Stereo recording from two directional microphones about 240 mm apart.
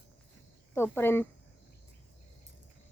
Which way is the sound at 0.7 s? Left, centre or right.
Centre.